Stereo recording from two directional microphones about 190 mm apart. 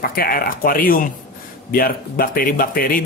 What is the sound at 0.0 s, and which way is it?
Speech, 50° left (ahead or behind).